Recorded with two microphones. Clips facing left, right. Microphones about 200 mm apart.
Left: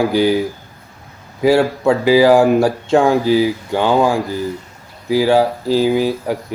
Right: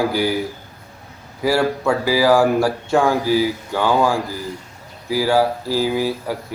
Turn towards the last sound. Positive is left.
turn(degrees=20)  # may be behind; listen again after turning